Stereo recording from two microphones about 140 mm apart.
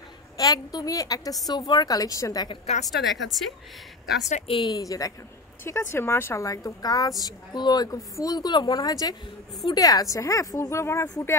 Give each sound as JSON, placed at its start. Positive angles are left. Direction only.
{"t": 0.4, "sound": "a woman's voice", "side_deg": 25}
{"t": 2.6, "sound": "a woman's voice", "side_deg": 50}
{"t": 2.9, "sound": "a woman's voice", "side_deg": 0}
{"t": 4.3, "sound": "a woman's voice", "side_deg": 45}